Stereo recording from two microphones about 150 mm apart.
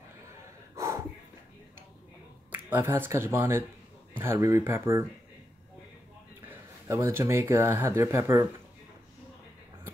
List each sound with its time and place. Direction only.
0.7 s snort: 20° right (ahead or behind)
2.5 s speech: 15° right (ahead or behind)
6.5 s speech: 20° right (ahead or behind)